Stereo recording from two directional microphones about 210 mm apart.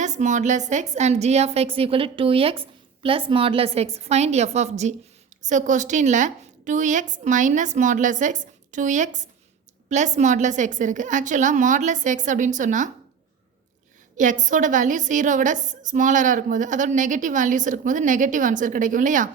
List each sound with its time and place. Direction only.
0.0 s a woman's voice: 35° right (ahead or behind)
14.4 s a woman's voice: 35° right (ahead or behind)